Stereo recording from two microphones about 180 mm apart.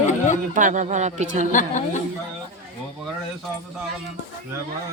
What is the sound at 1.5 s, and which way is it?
Speech, 45° left (ahead or behind).